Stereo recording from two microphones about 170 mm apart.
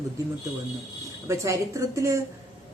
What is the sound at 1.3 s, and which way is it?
Speech, 20° right (ahead or behind).